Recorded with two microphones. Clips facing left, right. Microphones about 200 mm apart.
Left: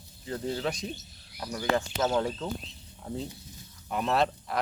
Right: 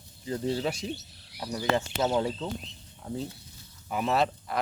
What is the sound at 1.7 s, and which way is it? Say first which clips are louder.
Speech: even; 20° right (ahead or behind).